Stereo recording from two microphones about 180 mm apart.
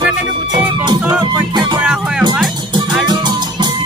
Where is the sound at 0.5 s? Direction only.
25° right (ahead or behind).